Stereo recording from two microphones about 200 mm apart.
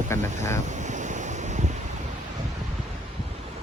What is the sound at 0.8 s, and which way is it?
Waves, 35° right (ahead or behind).